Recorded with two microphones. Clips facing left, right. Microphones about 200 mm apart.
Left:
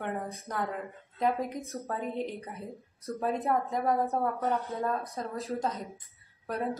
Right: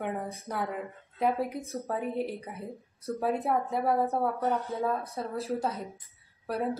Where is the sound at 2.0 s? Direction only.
10° right (ahead or behind).